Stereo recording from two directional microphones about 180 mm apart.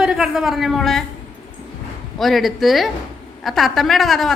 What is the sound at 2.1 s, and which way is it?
A woman's voice, centre (ahead or behind).